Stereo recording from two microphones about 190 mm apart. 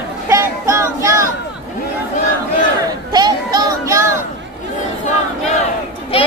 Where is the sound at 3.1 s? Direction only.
20° right (ahead or behind).